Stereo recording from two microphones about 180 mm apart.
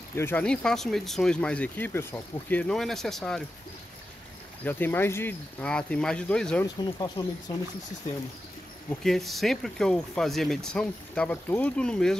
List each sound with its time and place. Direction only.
0.1 s speech: 10° left (ahead or behind)
4.6 s speech: 10° left (ahead or behind)
6.6 s speech: 20° left (ahead or behind)
9.0 s speech: centre (ahead or behind)